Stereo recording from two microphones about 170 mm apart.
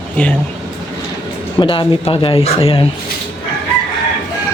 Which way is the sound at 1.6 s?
30° left (ahead or behind).